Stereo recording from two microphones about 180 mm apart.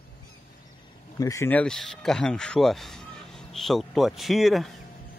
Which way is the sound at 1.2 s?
15° left (ahead or behind).